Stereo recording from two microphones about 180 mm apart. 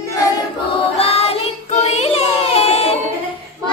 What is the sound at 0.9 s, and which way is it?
Child singing, 35° left (ahead or behind).